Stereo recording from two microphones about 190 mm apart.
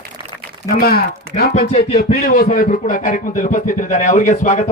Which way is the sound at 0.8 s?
55° left (ahead or behind).